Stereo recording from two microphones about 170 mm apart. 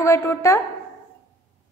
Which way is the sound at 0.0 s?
15° left (ahead or behind).